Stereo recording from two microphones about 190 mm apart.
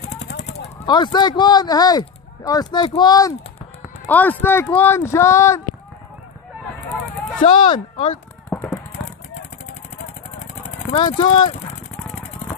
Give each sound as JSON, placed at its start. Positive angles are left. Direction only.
{"t": 0.8, "sound": "speech", "side_deg": 25}
{"t": 4.0, "sound": "speech", "side_deg": 10}
{"t": 7.5, "sound": "speech", "side_deg": 25}
{"t": 8.5, "sound": "a sound", "side_deg": 5}
{"t": 10.0, "sound": "vehicle", "side_deg": 30}